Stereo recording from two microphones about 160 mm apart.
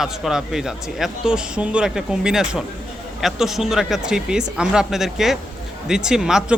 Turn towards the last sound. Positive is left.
turn(degrees=-5)  # may be behind; listen again after turning